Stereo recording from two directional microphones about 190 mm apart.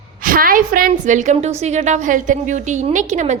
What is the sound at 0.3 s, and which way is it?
A woman's voice, 45° right (ahead or behind).